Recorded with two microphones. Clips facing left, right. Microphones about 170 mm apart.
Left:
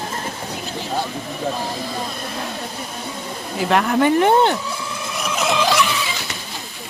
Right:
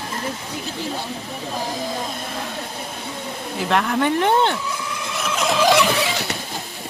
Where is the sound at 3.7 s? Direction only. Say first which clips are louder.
Left 3 dB; 5° left (ahead or behind).